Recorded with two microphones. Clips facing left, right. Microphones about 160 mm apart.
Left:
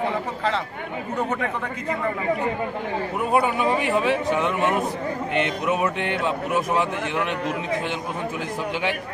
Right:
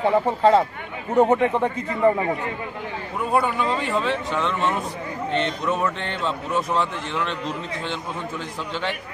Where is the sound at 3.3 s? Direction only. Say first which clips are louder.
Left 1 dB; 15° left (ahead or behind).